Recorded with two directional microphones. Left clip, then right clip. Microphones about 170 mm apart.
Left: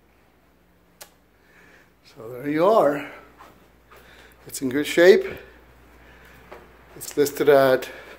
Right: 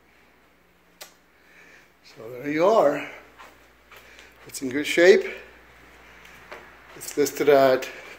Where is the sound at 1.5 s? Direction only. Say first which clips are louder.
Right 1 dB; 10° left (ahead or behind).